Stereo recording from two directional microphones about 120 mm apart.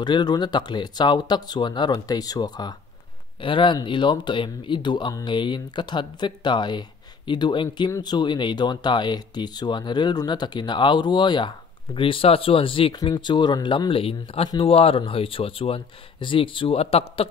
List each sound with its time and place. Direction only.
0.0 s speech: 35° left (ahead or behind)
3.3 s speech: 45° left (ahead or behind)
13.0 s speech: 35° left (ahead or behind); by 17.3 s 55° left (ahead or behind)